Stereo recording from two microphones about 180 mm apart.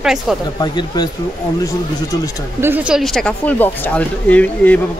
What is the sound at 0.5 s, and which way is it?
Speech, 25° left (ahead or behind).